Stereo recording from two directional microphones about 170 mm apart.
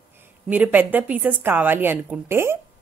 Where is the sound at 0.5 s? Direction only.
10° right (ahead or behind).